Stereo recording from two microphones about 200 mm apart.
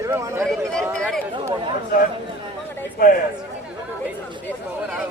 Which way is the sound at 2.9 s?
45° left (ahead or behind).